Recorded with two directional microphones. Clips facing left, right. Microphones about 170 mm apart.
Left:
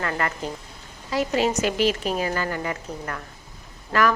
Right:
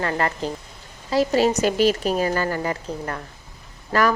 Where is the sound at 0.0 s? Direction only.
30° right (ahead or behind).